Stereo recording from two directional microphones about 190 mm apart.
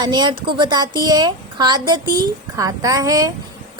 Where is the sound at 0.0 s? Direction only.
20° right (ahead or behind).